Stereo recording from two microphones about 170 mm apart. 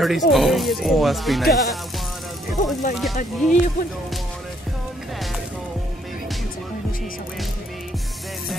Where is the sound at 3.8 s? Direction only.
55° left (ahead or behind).